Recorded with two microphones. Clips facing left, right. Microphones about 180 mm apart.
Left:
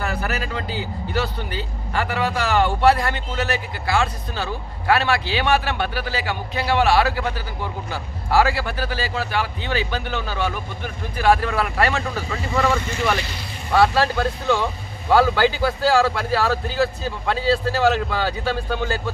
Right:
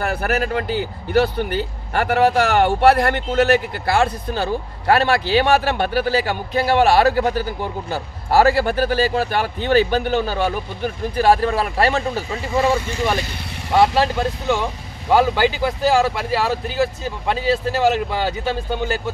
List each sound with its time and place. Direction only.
0.0 s speech: 55° right (ahead or behind); by 12.7 s 25° right (ahead or behind)
13.7 s speech: 20° right (ahead or behind)